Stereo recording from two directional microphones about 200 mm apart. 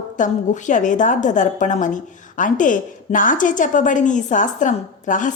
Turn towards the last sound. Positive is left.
turn(degrees=40)  # may be behind; listen again after turning